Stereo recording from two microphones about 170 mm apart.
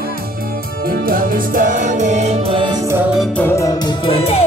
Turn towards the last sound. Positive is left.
turn(degrees=35)  # may be behind; listen again after turning